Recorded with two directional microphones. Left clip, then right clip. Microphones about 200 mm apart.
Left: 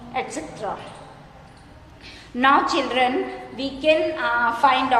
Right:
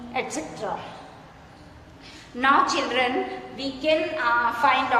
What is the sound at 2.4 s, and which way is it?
A woman's voice, 30° left (ahead or behind).